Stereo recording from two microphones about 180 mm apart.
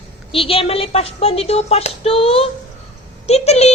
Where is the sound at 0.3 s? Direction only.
30° left (ahead or behind).